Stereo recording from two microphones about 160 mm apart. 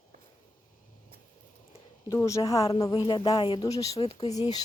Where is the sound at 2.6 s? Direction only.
35° left (ahead or behind).